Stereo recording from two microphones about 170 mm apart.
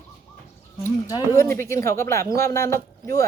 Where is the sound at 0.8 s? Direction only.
20° left (ahead or behind).